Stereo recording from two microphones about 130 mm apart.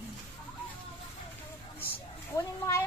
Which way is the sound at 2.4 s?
20° left (ahead or behind).